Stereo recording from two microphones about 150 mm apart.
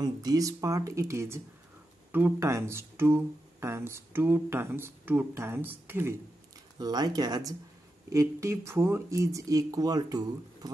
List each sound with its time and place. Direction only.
0.0 s speech: 25° right (ahead or behind)
6.8 s speech: 25° right (ahead or behind)